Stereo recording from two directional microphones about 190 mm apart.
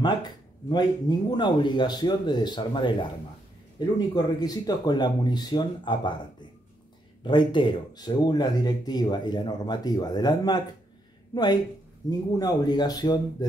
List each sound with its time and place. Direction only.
0.0 s speech: 20° left (ahead or behind)
4.1 s speech: 20° left (ahead or behind)
7.2 s speech: 25° left (ahead or behind)